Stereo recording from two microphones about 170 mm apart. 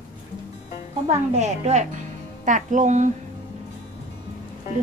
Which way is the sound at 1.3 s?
40° right (ahead or behind).